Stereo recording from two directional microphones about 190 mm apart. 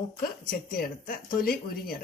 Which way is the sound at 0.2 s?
50° left (ahead or behind).